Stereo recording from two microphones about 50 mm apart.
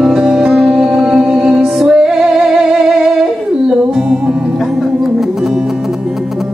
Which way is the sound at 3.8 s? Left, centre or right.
Centre.